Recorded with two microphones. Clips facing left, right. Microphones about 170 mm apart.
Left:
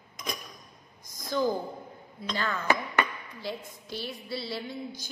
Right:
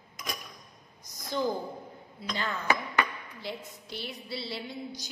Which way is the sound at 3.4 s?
20° right (ahead or behind).